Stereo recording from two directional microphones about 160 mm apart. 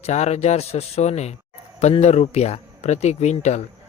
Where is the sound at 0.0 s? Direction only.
45° left (ahead or behind).